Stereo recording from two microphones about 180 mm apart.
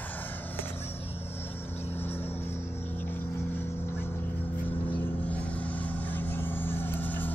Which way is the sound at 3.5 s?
15° left (ahead or behind).